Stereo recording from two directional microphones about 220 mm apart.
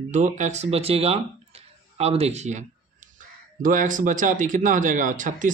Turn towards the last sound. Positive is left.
turn(degrees=-35)  # may be behind; listen again after turning